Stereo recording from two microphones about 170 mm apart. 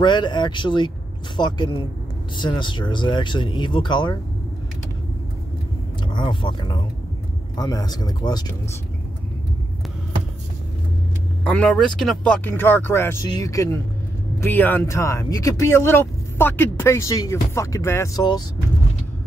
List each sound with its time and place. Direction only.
0.0 s speech: 25° left (ahead or behind)
6.1 s speech: 25° left (ahead or behind)
11.4 s speech: 5° left (ahead or behind); by 18.4 s 25° left (ahead or behind)